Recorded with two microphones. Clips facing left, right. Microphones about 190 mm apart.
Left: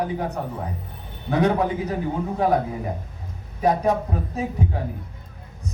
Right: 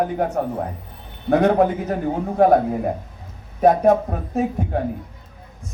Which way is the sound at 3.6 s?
50° right (ahead or behind).